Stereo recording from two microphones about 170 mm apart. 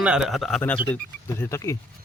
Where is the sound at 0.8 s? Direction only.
10° left (ahead or behind).